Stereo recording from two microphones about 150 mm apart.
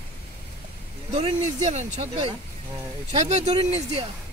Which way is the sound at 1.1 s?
50° right (ahead or behind).